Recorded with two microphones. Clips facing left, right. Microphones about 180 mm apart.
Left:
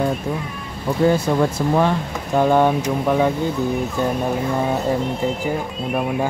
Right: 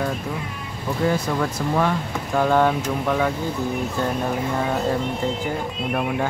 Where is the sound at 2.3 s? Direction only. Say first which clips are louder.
Left 3 dB; 15° left (ahead or behind).